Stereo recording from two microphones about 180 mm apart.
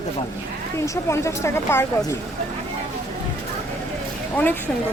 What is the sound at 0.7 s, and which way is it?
Speech, 15° left (ahead or behind).